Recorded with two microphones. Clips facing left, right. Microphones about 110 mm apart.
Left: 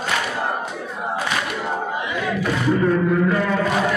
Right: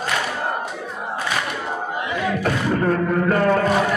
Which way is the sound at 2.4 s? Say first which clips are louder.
Left 3 dB; 50° right (ahead or behind).